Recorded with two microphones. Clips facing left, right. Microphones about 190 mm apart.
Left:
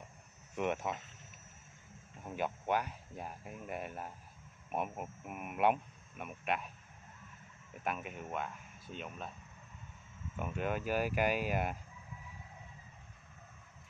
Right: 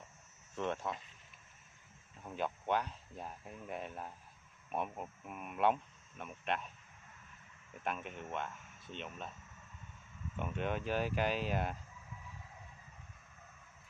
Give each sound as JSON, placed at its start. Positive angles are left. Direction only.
{"t": 0.6, "sound": "speech", "side_deg": 15}
{"t": 2.2, "sound": "speech", "side_deg": 10}
{"t": 7.8, "sound": "speech", "side_deg": 5}
{"t": 10.3, "sound": "speech", "side_deg": 5}